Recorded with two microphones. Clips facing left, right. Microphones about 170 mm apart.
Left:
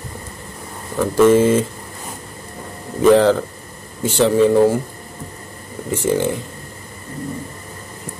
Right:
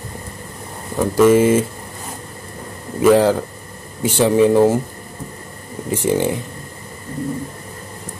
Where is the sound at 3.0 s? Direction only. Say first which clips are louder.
Left 1 dB; 10° right (ahead or behind).